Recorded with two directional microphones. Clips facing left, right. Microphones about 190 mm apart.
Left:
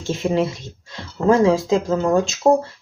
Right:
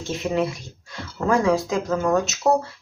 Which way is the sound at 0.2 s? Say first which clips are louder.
Left 3 dB; 25° left (ahead or behind).